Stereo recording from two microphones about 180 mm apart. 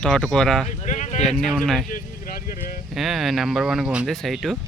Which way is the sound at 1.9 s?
55° left (ahead or behind).